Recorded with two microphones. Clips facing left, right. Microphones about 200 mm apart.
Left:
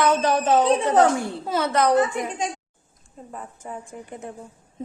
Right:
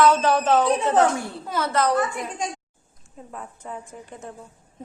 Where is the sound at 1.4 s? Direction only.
25° left (ahead or behind).